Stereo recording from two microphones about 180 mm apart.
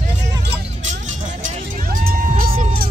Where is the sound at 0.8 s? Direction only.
40° right (ahead or behind).